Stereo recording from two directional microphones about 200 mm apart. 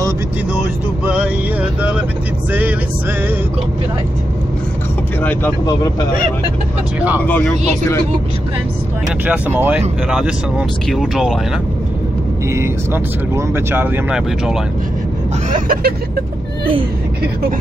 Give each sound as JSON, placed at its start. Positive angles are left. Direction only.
{"t": 1.0, "sound": "vehicle", "side_deg": -5}
{"t": 5.2, "sound": "speech", "side_deg": 10}
{"t": 7.2, "sound": "speech", "side_deg": 10}
{"t": 9.2, "sound": "speech", "side_deg": -10}
{"t": 10.9, "sound": "vehicle", "side_deg": 0}
{"t": 12.4, "sound": "speech", "side_deg": -15}
{"t": 15.5, "sound": "vehicle", "side_deg": -45}